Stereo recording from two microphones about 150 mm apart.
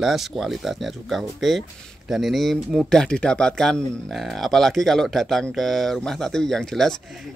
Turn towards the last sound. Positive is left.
turn(degrees=5)  # may be behind; listen again after turning